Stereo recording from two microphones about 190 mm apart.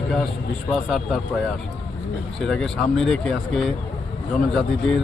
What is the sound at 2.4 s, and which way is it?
Speech, centre (ahead or behind).